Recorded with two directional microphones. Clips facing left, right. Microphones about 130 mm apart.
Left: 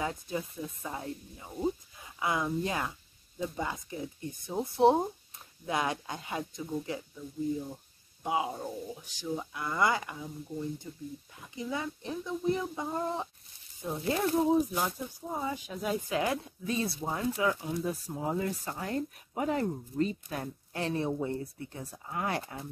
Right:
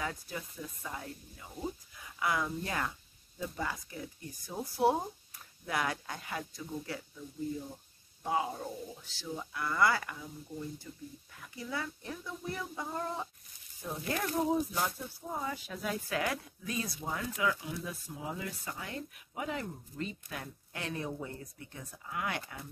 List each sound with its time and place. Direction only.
0.0 s speech: 25° left (ahead or behind)
11.3 s speech: 20° left (ahead or behind)
14.7 s speech: 15° left (ahead or behind); by 22.7 s 30° left (ahead or behind)